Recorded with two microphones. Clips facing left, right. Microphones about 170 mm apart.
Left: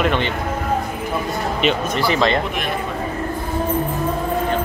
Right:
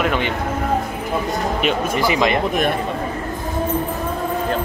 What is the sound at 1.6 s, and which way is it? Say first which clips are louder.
Speech: left 1 dB; 10° right (ahead or behind).